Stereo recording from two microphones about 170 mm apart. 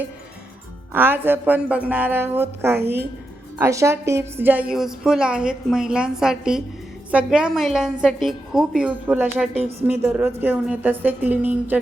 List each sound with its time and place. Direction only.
0.9 s a woman's voice: 10° right (ahead or behind)